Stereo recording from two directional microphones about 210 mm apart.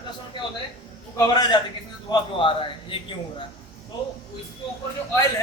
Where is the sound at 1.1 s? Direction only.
20° left (ahead or behind).